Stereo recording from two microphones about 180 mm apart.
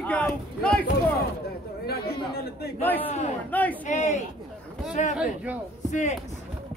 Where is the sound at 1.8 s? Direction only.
60° left (ahead or behind).